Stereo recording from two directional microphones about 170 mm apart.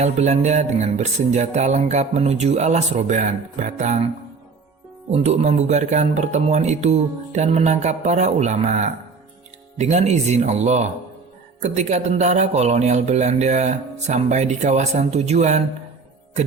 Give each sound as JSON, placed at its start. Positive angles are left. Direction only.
{"t": 0.0, "sound": "speech", "side_deg": -40}
{"t": 5.1, "sound": "speech", "side_deg": -40}